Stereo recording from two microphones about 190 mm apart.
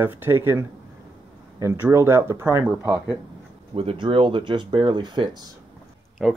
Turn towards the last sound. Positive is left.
turn(degrees=0)  # may be behind; listen again after turning